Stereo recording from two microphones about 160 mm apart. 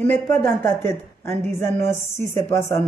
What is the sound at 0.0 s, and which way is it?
A man's voice, 10° left (ahead or behind).